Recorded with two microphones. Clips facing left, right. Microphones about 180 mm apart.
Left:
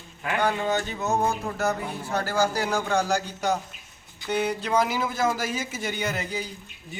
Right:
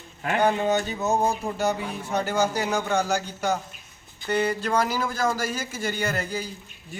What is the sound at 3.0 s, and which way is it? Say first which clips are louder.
A man's voice: even; 5° right (ahead or behind).